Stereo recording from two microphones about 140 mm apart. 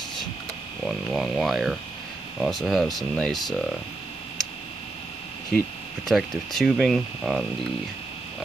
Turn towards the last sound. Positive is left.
turn(degrees=0)  # may be behind; listen again after turning